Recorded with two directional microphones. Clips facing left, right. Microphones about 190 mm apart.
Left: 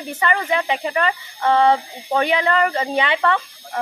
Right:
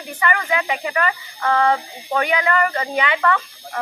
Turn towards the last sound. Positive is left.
turn(degrees=25)  # may be behind; listen again after turning